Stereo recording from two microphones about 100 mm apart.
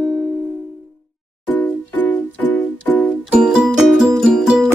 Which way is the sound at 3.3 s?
10° right (ahead or behind).